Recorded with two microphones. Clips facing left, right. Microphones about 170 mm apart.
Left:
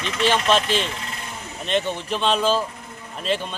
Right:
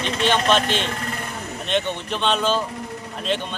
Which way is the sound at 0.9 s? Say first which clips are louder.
Right 4 dB; 50° right (ahead or behind).